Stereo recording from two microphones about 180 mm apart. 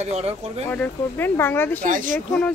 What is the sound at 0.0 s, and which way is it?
Speech, 35° right (ahead or behind).